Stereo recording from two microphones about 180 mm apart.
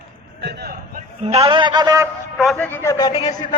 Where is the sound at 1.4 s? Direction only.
25° right (ahead or behind).